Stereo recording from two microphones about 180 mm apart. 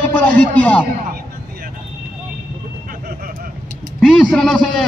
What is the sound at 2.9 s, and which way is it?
Vehicle, 50° right (ahead or behind).